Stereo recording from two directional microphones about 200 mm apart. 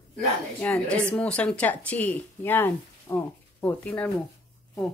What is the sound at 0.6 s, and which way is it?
Speech, 5° left (ahead or behind).